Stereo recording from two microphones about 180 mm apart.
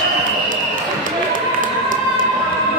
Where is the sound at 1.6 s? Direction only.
50° right (ahead or behind).